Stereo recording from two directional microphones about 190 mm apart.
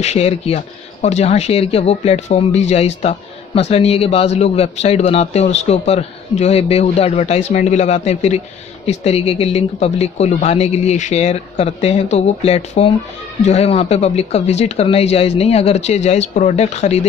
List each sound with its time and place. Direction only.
0.0 s a man's voice: 35° left (ahead or behind)